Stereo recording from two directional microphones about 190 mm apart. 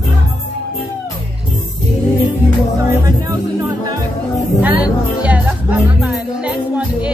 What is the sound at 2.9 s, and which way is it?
Music, 15° right (ahead or behind).